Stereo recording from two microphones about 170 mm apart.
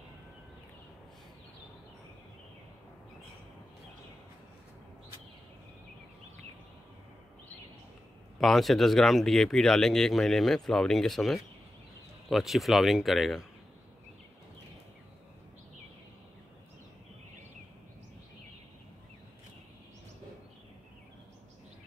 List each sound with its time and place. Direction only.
8.4 s speech: centre (ahead or behind)